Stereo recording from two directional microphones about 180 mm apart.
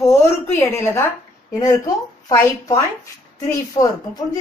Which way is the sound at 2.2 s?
15° left (ahead or behind).